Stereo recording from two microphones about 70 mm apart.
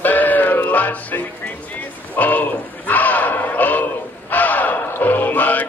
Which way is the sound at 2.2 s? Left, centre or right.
Left.